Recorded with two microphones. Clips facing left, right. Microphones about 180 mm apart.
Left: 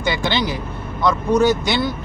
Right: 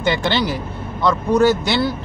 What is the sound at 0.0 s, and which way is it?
A man's voice, 15° left (ahead or behind).